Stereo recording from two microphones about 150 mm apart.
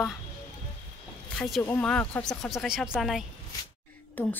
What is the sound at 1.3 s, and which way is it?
Speech, 5° left (ahead or behind).